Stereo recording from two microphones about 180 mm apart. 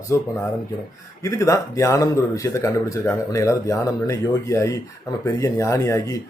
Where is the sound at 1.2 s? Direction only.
20° left (ahead or behind).